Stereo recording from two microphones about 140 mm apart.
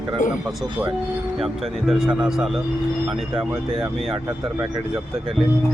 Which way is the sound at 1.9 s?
5° right (ahead or behind).